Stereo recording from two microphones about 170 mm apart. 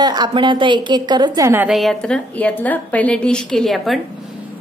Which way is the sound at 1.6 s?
Centre (ahead or behind).